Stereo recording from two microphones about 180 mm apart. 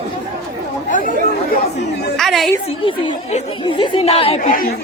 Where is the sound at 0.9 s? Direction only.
45° left (ahead or behind).